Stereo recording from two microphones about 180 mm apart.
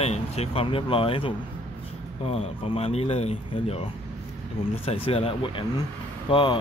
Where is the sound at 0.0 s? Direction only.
35° left (ahead or behind).